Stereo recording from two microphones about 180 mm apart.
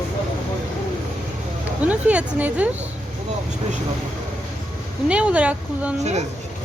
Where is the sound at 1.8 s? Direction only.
10° right (ahead or behind).